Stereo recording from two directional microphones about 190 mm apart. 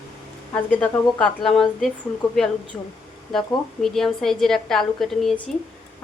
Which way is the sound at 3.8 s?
Centre (ahead or behind).